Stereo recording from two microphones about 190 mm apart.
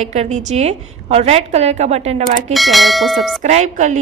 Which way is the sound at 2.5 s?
Centre (ahead or behind).